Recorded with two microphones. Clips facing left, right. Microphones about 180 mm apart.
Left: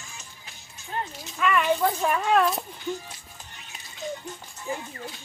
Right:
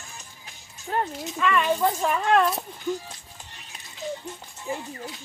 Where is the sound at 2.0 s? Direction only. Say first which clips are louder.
Right 1 dB; 5° left (ahead or behind).